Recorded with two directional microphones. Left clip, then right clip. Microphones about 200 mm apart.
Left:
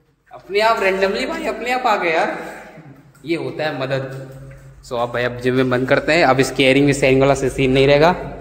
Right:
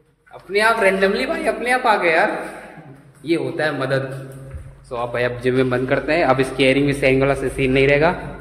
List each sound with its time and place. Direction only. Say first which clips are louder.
0.5 s a man's voice: even; centre (ahead or behind)
3.3 s a man's voice: right 2 dB; 5° right (ahead or behind)
5.1 s a man's voice: right 2 dB; 10° left (ahead or behind)
5.9 s speech: left 5 dB; 30° left (ahead or behind)